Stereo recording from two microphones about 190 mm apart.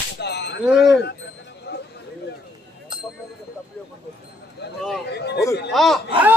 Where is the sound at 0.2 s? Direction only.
60° left (ahead or behind).